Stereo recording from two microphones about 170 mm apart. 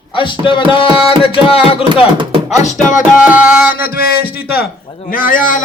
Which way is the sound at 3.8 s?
60° left (ahead or behind).